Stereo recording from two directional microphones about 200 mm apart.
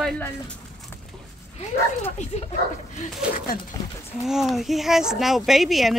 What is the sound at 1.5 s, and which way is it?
Speech, 30° left (ahead or behind).